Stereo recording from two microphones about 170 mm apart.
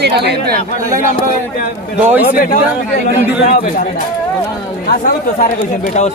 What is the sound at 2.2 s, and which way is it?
Speech, 50° left (ahead or behind).